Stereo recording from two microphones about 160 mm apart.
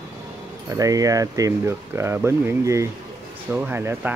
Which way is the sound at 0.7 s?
20° right (ahead or behind).